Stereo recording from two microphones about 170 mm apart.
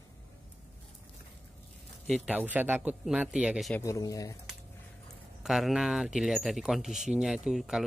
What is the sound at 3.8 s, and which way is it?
Speech, 20° left (ahead or behind).